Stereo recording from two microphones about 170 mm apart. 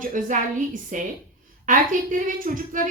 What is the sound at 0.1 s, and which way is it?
Speech, 50° right (ahead or behind).